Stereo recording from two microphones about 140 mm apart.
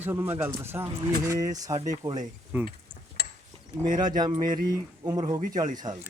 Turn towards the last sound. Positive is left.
turn(degrees=-25)  # may be behind; listen again after turning